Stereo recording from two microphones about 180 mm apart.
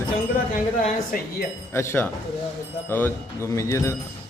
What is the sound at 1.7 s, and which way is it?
Speech, 15° left (ahead or behind).